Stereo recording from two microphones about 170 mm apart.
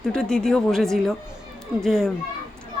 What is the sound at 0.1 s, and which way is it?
A woman's voice, 5° left (ahead or behind).